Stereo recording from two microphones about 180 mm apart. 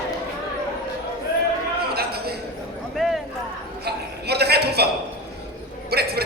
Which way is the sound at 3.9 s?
65° right (ahead or behind).